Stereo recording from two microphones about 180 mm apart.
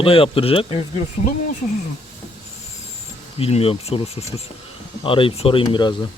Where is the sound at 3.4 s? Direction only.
30° left (ahead or behind).